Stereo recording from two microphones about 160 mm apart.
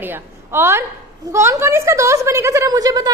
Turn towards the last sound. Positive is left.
turn(degrees=-25)  # may be behind; listen again after turning